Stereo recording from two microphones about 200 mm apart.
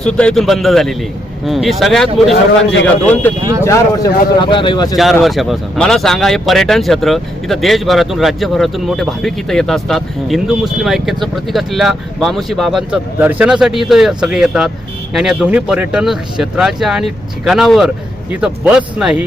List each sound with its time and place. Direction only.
0.0 s speech: 5° left (ahead or behind); by 4.9 s 20° left (ahead or behind)
5.2 s speech: centre (ahead or behind)